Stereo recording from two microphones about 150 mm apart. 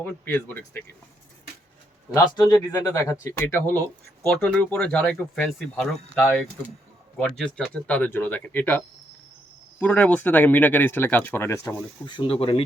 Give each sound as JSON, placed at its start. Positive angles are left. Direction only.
{"t": 0.0, "sound": "speech", "side_deg": 15}
{"t": 2.1, "sound": "speech", "side_deg": 25}
{"t": 9.8, "sound": "speech", "side_deg": 10}
{"t": 12.0, "sound": "speech", "side_deg": 35}